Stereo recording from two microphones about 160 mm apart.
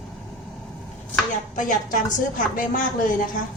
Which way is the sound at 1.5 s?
55° left (ahead or behind).